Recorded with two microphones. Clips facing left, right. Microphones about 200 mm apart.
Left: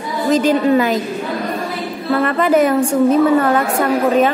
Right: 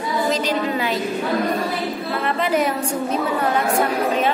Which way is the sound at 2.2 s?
50° left (ahead or behind).